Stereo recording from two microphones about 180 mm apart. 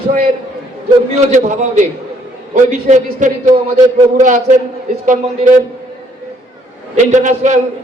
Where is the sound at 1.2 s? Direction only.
40° right (ahead or behind).